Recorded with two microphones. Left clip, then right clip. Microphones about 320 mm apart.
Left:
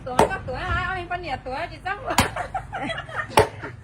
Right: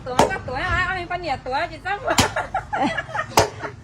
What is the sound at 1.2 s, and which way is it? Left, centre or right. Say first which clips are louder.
Speech: right 5 dB; right.